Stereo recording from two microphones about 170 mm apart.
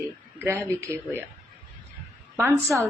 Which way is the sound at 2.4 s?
15° right (ahead or behind).